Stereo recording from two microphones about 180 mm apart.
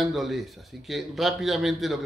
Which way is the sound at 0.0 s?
Centre (ahead or behind).